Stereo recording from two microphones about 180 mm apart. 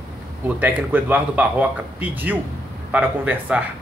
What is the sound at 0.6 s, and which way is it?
Speech, 10° right (ahead or behind).